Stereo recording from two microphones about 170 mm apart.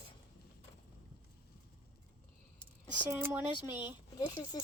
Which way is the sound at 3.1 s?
15° right (ahead or behind).